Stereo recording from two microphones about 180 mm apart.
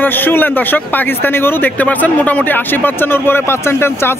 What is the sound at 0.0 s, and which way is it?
A man's voice, 10° left (ahead or behind).